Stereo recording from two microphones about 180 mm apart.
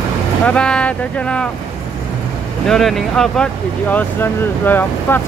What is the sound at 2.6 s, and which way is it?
Speech, centre (ahead or behind).